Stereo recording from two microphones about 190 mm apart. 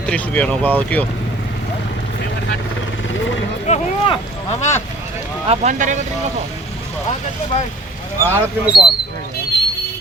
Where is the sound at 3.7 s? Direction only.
25° left (ahead or behind).